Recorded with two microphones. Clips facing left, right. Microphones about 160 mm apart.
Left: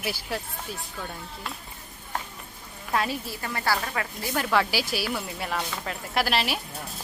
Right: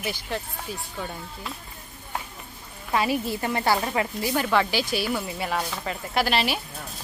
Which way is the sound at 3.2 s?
20° right (ahead or behind).